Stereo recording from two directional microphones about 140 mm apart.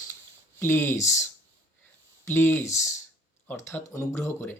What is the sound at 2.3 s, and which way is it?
Speech, 15° left (ahead or behind).